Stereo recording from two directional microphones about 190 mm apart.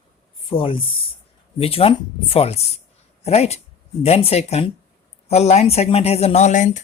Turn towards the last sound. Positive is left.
turn(degrees=40)  # may be behind; listen again after turning